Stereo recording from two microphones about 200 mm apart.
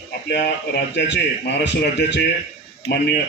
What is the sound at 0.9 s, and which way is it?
A man's voice, 60° left (ahead or behind).